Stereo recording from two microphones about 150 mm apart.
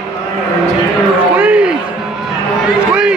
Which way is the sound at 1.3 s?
10° right (ahead or behind).